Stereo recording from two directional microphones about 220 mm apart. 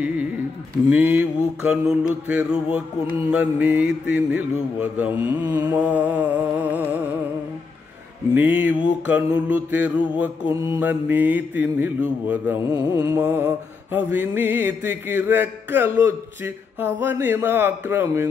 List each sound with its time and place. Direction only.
0.8 s mantra: 5° right (ahead or behind)
8.4 s mantra: 10° right (ahead or behind)